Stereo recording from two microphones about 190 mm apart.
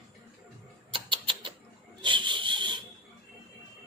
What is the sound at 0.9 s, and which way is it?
Rodents, 25° right (ahead or behind).